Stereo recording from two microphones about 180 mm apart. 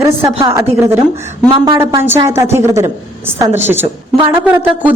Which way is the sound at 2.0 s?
15° right (ahead or behind).